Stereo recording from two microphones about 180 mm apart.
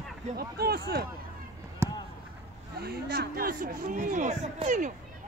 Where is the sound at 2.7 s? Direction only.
60° right (ahead or behind); by 4.9 s 45° right (ahead or behind).